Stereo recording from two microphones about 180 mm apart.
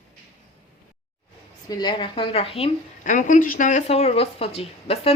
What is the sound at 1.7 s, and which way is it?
A woman's voice, 25° left (ahead or behind).